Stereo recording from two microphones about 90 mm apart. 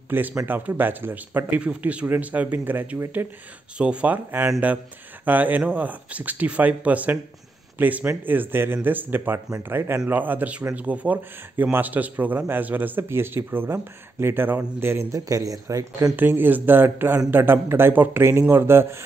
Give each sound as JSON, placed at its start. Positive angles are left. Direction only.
{"t": 0.1, "sound": "a man's voice", "side_deg": -20}
{"t": 16.2, "sound": "speech", "side_deg": -20}